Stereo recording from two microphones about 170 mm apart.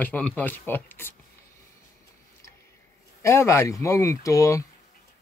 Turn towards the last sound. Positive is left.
turn(degrees=20)  # may be behind; listen again after turning